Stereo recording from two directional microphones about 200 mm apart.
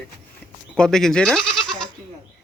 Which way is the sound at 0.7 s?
5° left (ahead or behind).